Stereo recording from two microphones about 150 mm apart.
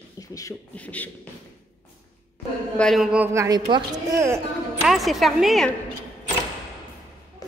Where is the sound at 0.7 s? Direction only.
10° left (ahead or behind).